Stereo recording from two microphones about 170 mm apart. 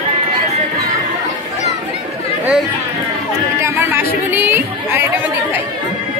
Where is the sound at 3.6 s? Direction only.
10° right (ahead or behind).